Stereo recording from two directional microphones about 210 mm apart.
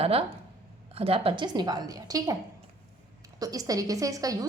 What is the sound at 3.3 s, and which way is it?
A woman's voice, 15° right (ahead or behind).